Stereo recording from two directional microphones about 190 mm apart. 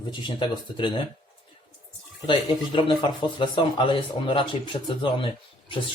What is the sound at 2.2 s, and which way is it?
Speech, 25° left (ahead or behind).